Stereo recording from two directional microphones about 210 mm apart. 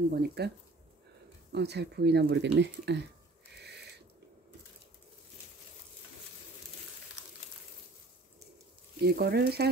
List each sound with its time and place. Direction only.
0.1 s speech: 50° right (ahead or behind)
1.5 s speech: 50° right (ahead or behind)
3.5 s a sound: 50° right (ahead or behind)
9.0 s speech: 50° right (ahead or behind)